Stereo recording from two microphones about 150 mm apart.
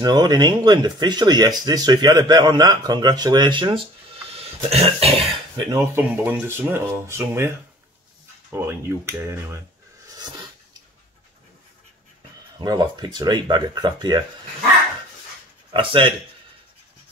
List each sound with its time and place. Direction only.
0.0 s speech: 30° right (ahead or behind); by 5.2 s 45° right (ahead or behind)
5.3 s speech: 30° right (ahead or behind)
5.9 s speech: 10° right (ahead or behind)
10.1 s dog: 30° right (ahead or behind)
12.5 s speech: 30° right (ahead or behind)
15.7 s speech: 35° right (ahead or behind)